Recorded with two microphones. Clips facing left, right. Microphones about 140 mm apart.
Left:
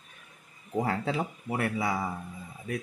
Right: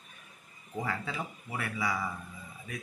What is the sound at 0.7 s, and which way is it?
Speech, 60° left (ahead or behind).